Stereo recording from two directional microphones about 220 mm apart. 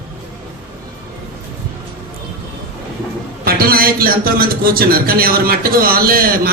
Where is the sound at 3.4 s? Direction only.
45° right (ahead or behind).